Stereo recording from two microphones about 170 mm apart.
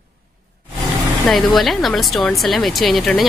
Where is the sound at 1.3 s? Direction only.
Centre (ahead or behind).